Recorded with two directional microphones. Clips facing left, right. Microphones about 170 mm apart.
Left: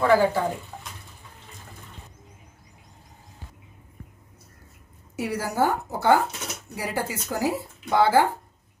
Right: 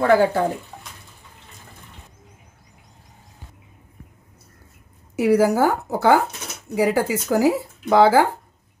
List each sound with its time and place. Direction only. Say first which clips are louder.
0.0 s speech: right 3 dB; 55° right (ahead or behind)
5.1 s speech: right 11 dB; 90° right